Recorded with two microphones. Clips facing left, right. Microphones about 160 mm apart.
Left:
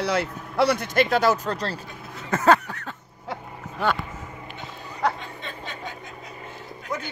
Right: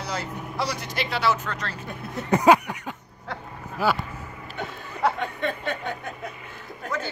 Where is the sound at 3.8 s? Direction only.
5° right (ahead or behind).